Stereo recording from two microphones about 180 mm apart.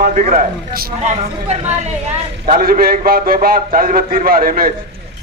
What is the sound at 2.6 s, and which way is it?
Speech, 55° right (ahead or behind).